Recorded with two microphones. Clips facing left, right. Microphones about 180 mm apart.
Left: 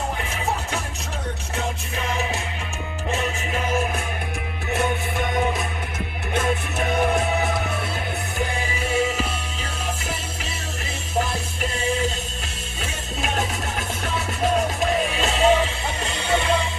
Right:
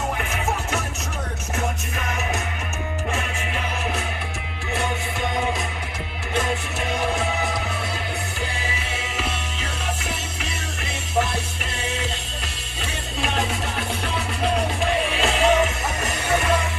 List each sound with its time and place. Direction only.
15.1 s music: 35° left (ahead or behind)